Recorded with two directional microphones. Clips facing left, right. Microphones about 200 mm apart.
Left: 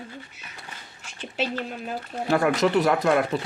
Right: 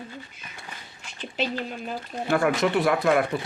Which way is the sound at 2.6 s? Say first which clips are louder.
Left 2 dB; 40° left (ahead or behind).